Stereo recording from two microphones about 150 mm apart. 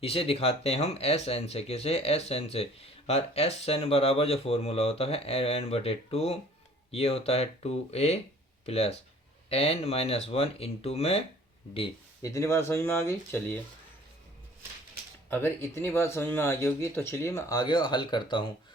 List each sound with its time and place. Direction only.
0.0 s speech: 40° left (ahead or behind)
12.2 s speech: 20° left (ahead or behind)
15.3 s speech: 15° left (ahead or behind); by 18.5 s 30° left (ahead or behind)